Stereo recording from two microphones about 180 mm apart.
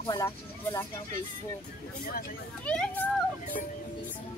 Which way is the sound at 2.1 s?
55° left (ahead or behind).